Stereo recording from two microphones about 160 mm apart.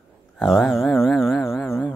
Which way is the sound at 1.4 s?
15° left (ahead or behind).